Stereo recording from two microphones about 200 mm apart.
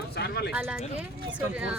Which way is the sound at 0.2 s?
55° left (ahead or behind).